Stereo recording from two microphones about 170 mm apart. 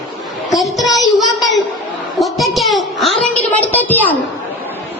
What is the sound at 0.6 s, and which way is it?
Child singing, centre (ahead or behind).